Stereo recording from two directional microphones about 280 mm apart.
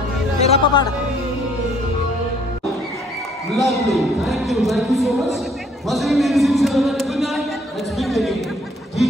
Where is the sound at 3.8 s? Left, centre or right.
Centre.